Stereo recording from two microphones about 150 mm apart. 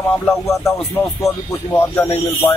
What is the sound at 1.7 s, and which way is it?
Speech, 15° left (ahead or behind).